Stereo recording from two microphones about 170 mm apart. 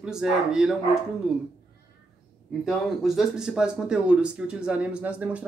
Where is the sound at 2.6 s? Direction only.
Centre (ahead or behind).